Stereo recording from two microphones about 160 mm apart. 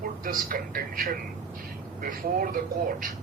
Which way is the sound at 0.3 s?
65° right (ahead or behind).